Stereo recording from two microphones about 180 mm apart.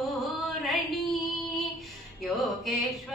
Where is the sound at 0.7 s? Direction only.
Centre (ahead or behind).